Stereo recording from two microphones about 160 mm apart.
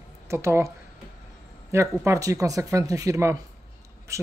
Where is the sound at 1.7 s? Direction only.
20° right (ahead or behind).